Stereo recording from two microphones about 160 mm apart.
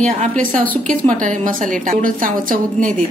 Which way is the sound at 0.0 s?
50° right (ahead or behind).